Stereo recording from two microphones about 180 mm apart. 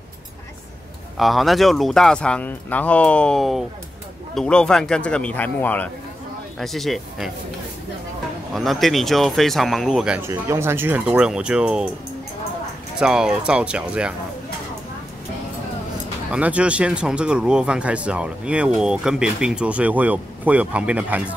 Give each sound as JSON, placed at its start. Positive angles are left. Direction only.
{"t": 1.1, "sound": "speech", "side_deg": 0}
{"t": 8.5, "sound": "speech", "side_deg": 0}
{"t": 13.0, "sound": "speech", "side_deg": -5}
{"t": 16.3, "sound": "speech", "side_deg": -5}